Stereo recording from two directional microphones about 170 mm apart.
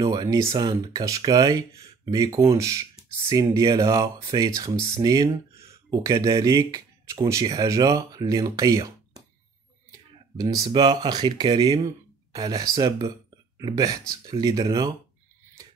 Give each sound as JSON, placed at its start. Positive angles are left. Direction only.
{"t": 0.0, "sound": "speech", "side_deg": -25}